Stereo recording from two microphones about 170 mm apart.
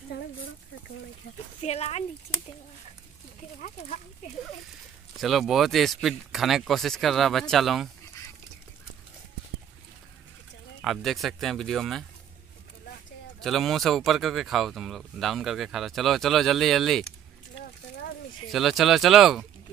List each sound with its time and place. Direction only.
1.6 s speech: 40° left (ahead or behind)
3.6 s speech: 45° left (ahead or behind)
5.2 s speech: centre (ahead or behind)
10.8 s speech: centre (ahead or behind)
13.4 s speech: centre (ahead or behind)
18.5 s speech: centre (ahead or behind)